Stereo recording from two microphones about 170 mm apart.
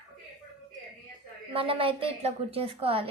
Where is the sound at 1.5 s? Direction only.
30° right (ahead or behind).